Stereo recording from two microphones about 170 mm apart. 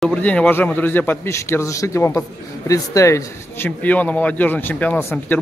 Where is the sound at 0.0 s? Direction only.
5° left (ahead or behind).